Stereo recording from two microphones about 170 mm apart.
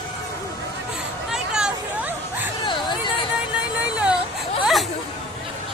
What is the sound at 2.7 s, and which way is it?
Hubbub, 30° left (ahead or behind).